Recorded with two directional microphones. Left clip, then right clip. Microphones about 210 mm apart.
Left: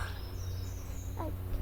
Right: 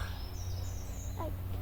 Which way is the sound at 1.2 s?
30° left (ahead or behind).